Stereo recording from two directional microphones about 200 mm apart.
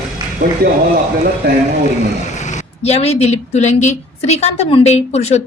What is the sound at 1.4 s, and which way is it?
Speech, 50° right (ahead or behind).